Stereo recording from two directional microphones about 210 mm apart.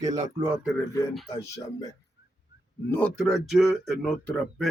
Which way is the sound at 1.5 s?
15° left (ahead or behind).